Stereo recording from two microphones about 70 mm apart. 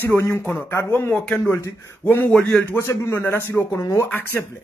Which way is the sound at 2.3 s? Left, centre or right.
Centre.